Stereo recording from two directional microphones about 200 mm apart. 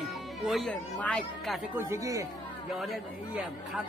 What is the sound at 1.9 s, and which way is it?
Speech, 15° right (ahead or behind).